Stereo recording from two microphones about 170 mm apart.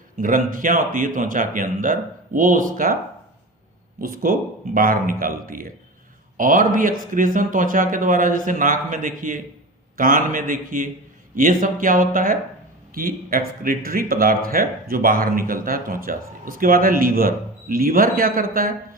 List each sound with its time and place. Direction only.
0.2 s speech: 55° right (ahead or behind)
4.0 s speech: 55° right (ahead or behind)